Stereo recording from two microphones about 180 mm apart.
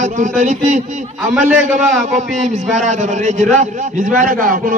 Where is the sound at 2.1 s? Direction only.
40° right (ahead or behind).